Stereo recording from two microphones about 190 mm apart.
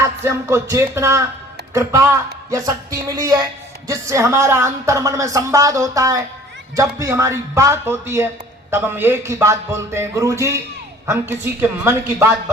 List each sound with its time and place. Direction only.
0.0 s speech: 15° right (ahead or behind)